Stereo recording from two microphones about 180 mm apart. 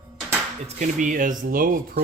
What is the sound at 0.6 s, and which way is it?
Speech, 45° right (ahead or behind).